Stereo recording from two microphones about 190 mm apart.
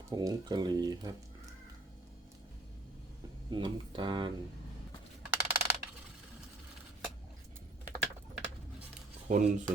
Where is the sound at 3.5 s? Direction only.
25° right (ahead or behind).